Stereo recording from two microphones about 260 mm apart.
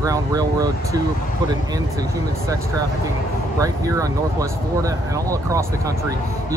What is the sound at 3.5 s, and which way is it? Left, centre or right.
Speech, centre.